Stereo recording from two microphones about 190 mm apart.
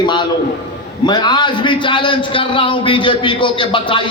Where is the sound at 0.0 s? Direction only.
25° left (ahead or behind).